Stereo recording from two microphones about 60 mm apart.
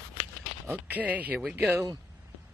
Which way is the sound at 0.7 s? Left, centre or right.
Right.